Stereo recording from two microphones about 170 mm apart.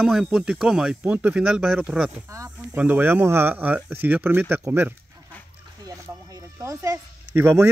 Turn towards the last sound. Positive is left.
turn(degrees=-15)  # may be behind; listen again after turning